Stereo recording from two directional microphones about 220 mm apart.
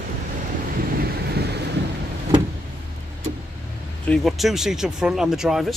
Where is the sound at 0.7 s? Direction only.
45° right (ahead or behind).